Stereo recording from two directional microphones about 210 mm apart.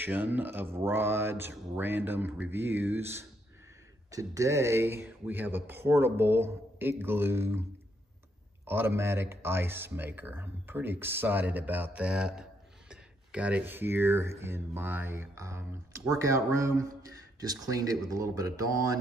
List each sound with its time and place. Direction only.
0.0 s speech: 10° right (ahead or behind)
8.6 s speech: 10° right (ahead or behind)